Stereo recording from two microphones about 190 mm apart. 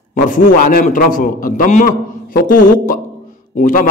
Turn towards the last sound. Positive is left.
turn(degrees=45)  # may be behind; listen again after turning